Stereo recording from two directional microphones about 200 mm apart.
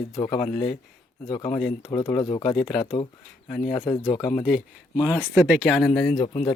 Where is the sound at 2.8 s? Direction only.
25° left (ahead or behind).